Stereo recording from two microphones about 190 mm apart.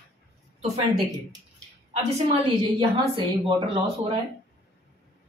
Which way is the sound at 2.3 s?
25° right (ahead or behind).